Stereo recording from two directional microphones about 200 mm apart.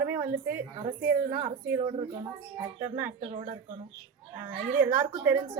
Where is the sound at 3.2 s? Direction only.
30° right (ahead or behind).